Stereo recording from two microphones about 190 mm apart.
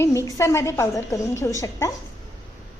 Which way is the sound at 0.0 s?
15° left (ahead or behind).